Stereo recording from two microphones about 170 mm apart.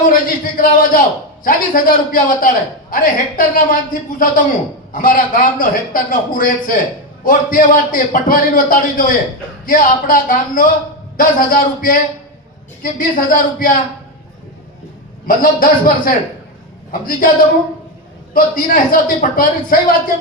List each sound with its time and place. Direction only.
0.1 s a man's voice: 55° left (ahead or behind)
15.3 s a man's voice: 55° left (ahead or behind)
18.3 s a man's voice: 55° left (ahead or behind)